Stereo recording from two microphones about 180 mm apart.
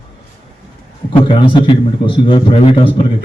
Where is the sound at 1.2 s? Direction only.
25° left (ahead or behind).